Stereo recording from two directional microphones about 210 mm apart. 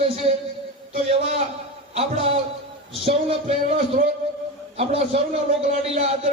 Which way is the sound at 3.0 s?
30° right (ahead or behind).